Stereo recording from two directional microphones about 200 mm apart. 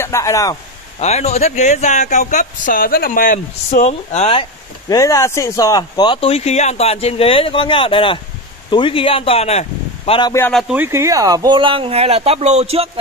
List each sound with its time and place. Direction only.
0.0 s speech: 15° left (ahead or behind)
0.9 s speech: 35° left (ahead or behind)
10.5 s speech: 10° right (ahead or behind); by 13.0 s 30° right (ahead or behind)